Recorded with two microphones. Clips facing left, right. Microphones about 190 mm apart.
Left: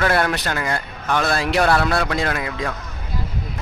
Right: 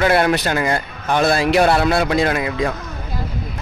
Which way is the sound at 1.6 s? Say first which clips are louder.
Right 3 dB; 25° right (ahead or behind).